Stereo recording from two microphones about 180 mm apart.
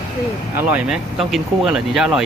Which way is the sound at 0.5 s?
5° right (ahead or behind).